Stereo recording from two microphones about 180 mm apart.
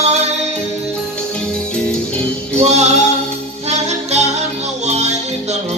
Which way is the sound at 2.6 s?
40° right (ahead or behind).